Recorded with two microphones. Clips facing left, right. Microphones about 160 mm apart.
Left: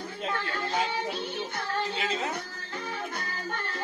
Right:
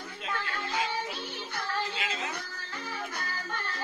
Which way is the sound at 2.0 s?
35° left (ahead or behind).